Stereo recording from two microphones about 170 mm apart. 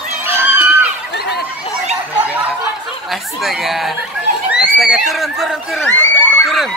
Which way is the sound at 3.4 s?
Centre (ahead or behind).